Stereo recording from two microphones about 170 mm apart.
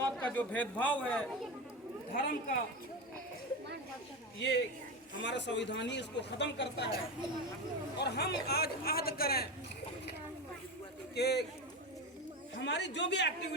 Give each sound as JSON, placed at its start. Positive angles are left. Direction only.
{"t": 0.0, "sound": "a man's voice", "side_deg": 10}
{"t": 2.1, "sound": "speech", "side_deg": 50}
{"t": 4.4, "sound": "a man's voice", "side_deg": 90}
{"t": 7.9, "sound": "speech", "side_deg": 75}
{"t": 11.1, "sound": "a man's voice", "side_deg": 75}
{"t": 12.5, "sound": "a man's voice", "side_deg": 90}